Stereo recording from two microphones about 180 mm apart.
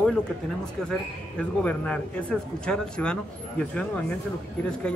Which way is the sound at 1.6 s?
5° left (ahead or behind).